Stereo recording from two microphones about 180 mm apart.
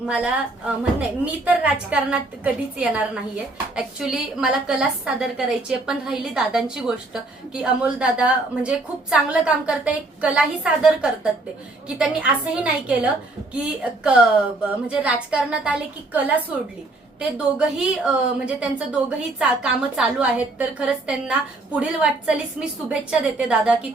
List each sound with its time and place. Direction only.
0.0 s a woman's voice: 5° right (ahead or behind)